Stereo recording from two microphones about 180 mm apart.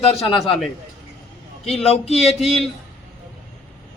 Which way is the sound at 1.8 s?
35° left (ahead or behind).